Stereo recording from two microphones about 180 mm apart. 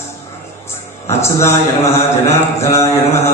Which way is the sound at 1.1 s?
15° left (ahead or behind).